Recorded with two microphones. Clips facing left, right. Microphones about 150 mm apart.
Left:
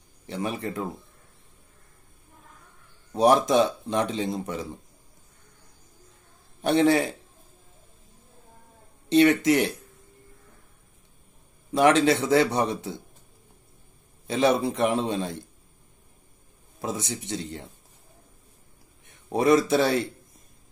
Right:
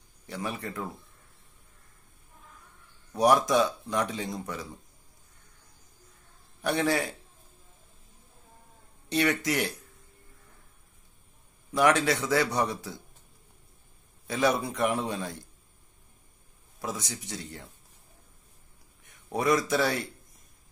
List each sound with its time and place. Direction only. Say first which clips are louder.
0.3 s speech: left 5 dB; 25° left (ahead or behind)
3.1 s speech: left 3 dB; 25° left (ahead or behind)
6.6 s speech: left 7 dB; 25° left (ahead or behind)
9.1 s speech: left 8 dB; 25° left (ahead or behind)
11.7 s speech: left 5 dB; 25° left (ahead or behind)
14.2 s speech: left 4 dB; 25° left (ahead or behind)
16.8 s speech: left 5 dB; 25° left (ahead or behind)
19.0 s a man's voice: left 5 dB; 25° left (ahead or behind)